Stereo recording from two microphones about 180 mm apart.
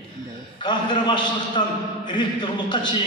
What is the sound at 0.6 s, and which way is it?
A man's voice, 25° left (ahead or behind).